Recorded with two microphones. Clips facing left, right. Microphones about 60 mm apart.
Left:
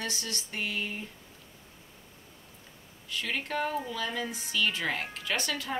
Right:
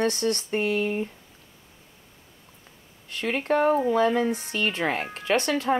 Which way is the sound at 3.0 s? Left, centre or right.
Right.